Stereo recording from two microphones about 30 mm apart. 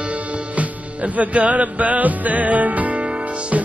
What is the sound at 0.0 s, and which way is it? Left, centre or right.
Music, right.